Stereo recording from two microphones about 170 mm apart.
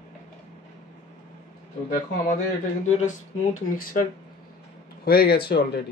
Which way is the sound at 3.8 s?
55° left (ahead or behind).